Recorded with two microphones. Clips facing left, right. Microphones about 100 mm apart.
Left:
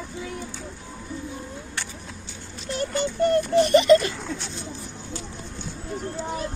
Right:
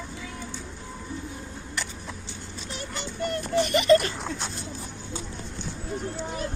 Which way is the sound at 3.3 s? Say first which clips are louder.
Left 7 dB; 30° left (ahead or behind).